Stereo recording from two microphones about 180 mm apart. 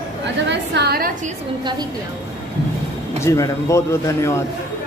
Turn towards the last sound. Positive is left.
turn(degrees=15)  # may be behind; listen again after turning